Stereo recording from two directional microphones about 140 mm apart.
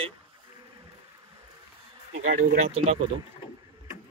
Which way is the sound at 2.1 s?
85° right.